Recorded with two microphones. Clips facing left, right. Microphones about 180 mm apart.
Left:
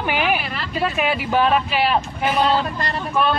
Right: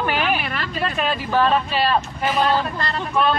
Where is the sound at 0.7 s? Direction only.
5° left (ahead or behind).